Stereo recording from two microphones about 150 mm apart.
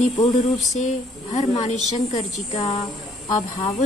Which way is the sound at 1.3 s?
50° left (ahead or behind).